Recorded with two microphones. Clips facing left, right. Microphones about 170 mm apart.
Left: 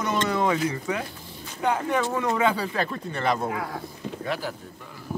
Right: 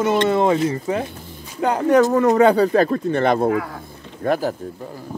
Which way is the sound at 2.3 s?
45° right (ahead or behind).